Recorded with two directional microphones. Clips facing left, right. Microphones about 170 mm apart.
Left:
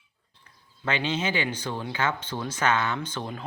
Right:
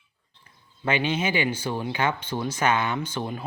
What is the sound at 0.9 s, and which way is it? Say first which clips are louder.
Speech: right 3 dB; 10° right (ahead or behind).